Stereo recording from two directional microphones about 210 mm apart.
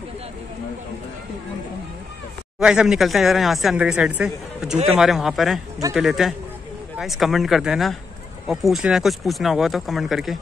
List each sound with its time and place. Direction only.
2.6 s speech: 5° right (ahead or behind)